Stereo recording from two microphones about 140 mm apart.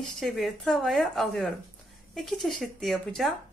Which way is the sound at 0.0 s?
Centre (ahead or behind).